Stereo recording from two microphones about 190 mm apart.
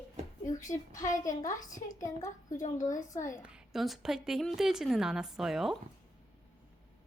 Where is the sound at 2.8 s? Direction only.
20° left (ahead or behind).